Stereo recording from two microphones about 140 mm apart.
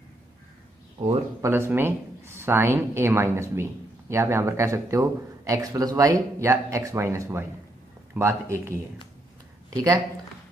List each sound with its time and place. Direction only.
1.4 s speech: 15° right (ahead or behind)